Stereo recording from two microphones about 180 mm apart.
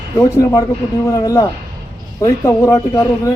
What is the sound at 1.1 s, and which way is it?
Speech, 20° left (ahead or behind).